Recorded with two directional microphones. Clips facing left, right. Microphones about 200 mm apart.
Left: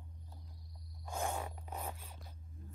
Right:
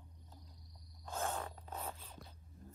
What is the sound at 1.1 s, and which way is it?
Zipper, 15° left (ahead or behind).